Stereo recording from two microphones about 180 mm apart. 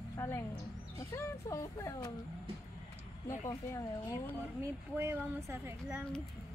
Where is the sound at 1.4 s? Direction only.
15° left (ahead or behind).